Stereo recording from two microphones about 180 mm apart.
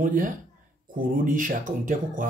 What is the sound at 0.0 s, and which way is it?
Speech, 50° right (ahead or behind).